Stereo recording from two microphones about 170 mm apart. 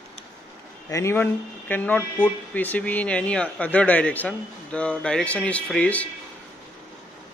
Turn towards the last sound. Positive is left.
turn(degrees=10)  # may be behind; listen again after turning